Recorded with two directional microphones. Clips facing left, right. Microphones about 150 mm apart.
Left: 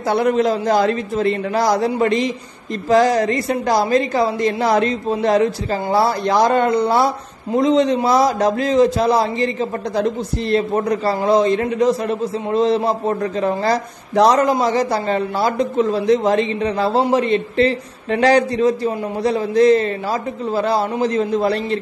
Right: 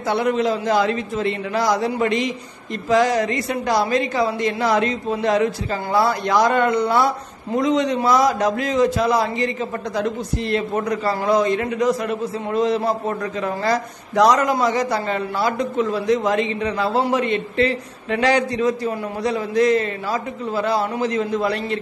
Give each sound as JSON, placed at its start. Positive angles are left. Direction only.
{"t": 0.0, "sound": "a woman's voice", "side_deg": 45}